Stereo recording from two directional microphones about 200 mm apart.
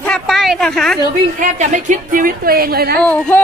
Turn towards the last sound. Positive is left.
turn(degrees=5)  # may be behind; listen again after turning